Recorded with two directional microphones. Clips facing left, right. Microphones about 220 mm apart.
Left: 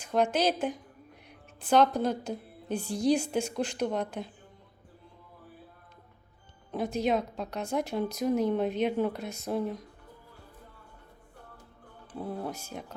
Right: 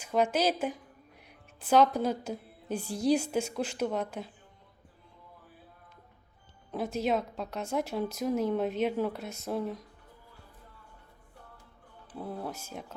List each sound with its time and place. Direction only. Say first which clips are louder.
0.0 s a woman's voice: left 1 dB; 5° right (ahead or behind)
6.7 s speech: left 2 dB; 5° right (ahead or behind)
12.1 s speech: left 2 dB; centre (ahead or behind)